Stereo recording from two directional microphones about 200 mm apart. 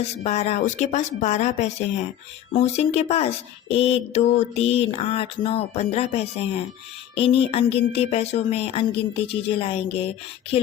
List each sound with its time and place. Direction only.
0.0 s speech: 35° left (ahead or behind)